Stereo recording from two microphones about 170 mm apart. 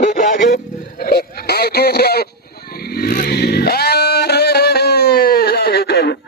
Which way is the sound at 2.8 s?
60° left (ahead or behind).